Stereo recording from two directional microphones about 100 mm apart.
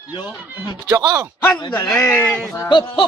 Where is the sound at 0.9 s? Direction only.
40° right (ahead or behind).